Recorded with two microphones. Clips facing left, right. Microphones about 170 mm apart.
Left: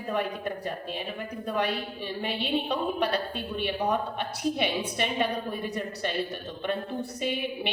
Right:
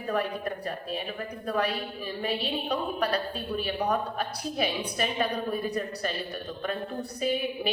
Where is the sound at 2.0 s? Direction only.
30° left (ahead or behind).